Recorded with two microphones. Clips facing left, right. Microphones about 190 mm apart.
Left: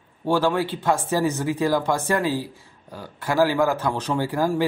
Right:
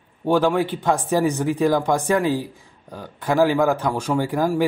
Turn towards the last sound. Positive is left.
turn(degrees=-15)  # may be behind; listen again after turning